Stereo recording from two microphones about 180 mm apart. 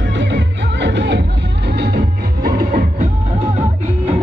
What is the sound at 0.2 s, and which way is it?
Music, 80° right.